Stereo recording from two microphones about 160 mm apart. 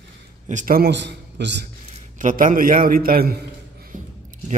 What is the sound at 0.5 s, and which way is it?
A man's voice, 55° right (ahead or behind).